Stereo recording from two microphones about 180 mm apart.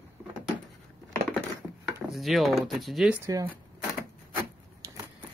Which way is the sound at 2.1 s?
Centre (ahead or behind).